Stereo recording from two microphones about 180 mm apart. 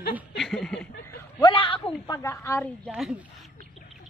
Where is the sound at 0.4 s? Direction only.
5° left (ahead or behind).